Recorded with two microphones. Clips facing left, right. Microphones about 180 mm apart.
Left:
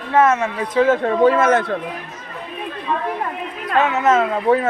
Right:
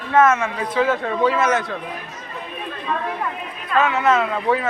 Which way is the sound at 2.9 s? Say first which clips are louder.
Left 2 dB; 15° left (ahead or behind).